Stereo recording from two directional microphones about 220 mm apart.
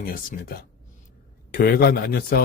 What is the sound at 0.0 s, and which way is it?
Speech, 40° left (ahead or behind).